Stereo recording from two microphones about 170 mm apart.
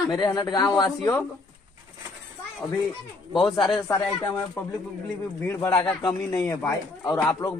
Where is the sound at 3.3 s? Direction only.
Centre (ahead or behind).